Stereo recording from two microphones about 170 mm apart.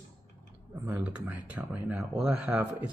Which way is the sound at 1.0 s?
10° right (ahead or behind).